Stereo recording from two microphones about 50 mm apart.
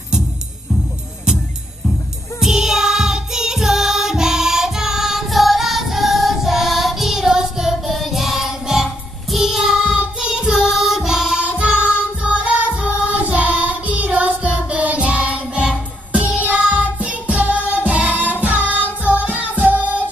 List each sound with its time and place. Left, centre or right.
2.4 s music: centre
9.6 s singing: centre
10.2 s music: centre
11.4 s music: right